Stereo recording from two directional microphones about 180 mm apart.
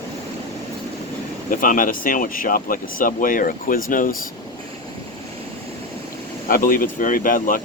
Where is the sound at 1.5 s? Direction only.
50° left (ahead or behind).